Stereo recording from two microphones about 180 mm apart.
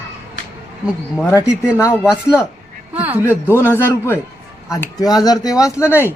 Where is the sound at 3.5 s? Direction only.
10° left (ahead or behind).